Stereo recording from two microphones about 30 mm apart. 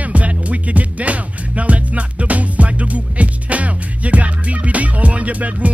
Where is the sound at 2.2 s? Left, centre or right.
Right.